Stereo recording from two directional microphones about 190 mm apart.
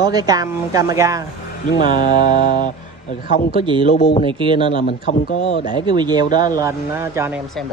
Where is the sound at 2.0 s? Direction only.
45° left (ahead or behind).